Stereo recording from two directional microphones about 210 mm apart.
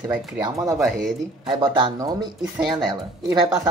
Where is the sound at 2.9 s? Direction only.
20° right (ahead or behind).